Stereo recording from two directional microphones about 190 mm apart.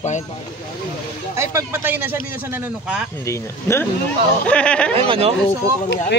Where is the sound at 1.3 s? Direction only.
15° right (ahead or behind).